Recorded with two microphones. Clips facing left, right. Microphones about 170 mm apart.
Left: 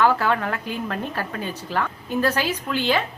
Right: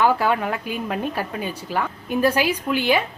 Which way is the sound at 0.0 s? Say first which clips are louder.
Right 1 dB; 15° right (ahead or behind).